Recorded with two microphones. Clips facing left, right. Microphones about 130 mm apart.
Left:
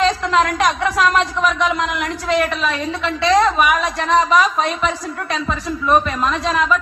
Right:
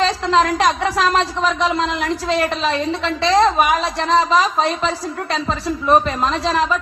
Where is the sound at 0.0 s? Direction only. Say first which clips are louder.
Even; 30° right (ahead or behind).